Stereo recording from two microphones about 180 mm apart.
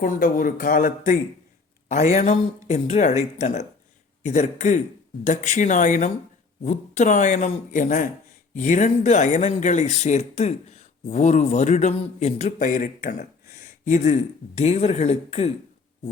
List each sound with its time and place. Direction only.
0.0 s a man's voice: 45° left (ahead or behind)
13.6 s a sound: 45° left (ahead or behind)
14.6 s speech: 35° left (ahead or behind)